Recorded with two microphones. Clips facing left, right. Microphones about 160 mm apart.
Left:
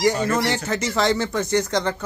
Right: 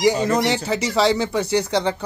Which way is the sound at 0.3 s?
15° right (ahead or behind).